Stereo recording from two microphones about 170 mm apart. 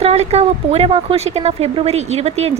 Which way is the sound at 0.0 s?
40° right (ahead or behind).